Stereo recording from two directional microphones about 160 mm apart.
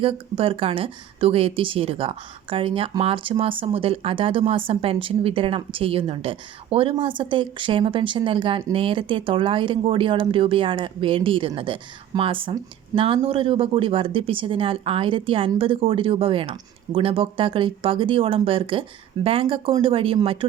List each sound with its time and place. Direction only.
0.0 s a woman's voice: 35° right (ahead or behind)